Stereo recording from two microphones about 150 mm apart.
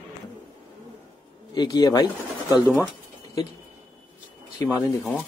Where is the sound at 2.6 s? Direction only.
10° right (ahead or behind).